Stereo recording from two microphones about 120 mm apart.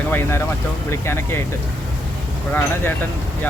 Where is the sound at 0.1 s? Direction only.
20° left (ahead or behind).